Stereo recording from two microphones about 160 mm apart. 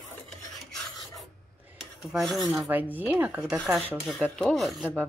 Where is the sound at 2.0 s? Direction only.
Centre (ahead or behind).